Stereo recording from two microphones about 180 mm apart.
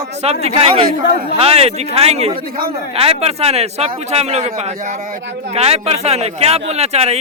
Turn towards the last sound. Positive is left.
turn(degrees=-35)  # may be behind; listen again after turning